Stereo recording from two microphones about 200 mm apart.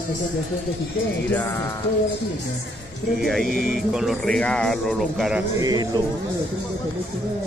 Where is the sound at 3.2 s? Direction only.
Centre (ahead or behind).